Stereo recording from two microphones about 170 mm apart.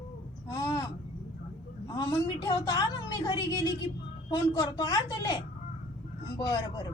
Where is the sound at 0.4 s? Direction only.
20° left (ahead or behind).